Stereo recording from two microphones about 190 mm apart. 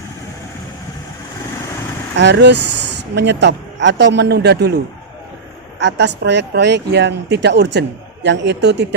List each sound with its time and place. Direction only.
2.1 s speech: 65° right (ahead or behind)
5.8 s speech: 65° right (ahead or behind)